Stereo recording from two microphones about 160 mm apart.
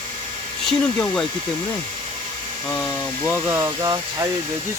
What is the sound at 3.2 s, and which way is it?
Speech, 15° right (ahead or behind).